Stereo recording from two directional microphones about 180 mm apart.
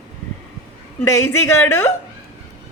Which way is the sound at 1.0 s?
15° left (ahead or behind).